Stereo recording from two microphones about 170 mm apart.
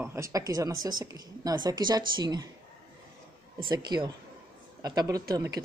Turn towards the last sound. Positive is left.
turn(degrees=-20)  # may be behind; listen again after turning